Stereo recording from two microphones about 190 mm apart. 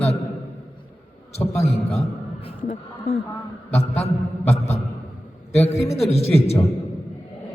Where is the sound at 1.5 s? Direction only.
35° left (ahead or behind).